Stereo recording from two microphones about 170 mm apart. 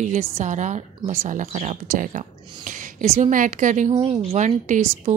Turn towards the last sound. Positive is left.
turn(degrees=-40)  # may be behind; listen again after turning